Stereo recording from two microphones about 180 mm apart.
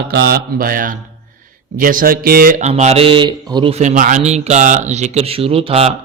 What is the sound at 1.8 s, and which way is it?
Speech, 50° right (ahead or behind).